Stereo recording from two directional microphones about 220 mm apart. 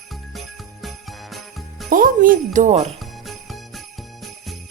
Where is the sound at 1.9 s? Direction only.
40° right (ahead or behind).